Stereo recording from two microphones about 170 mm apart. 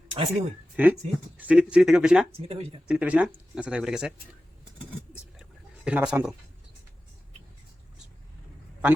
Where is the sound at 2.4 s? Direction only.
35° right (ahead or behind).